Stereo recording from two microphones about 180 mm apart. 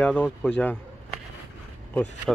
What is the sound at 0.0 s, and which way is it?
Speech, 5° left (ahead or behind).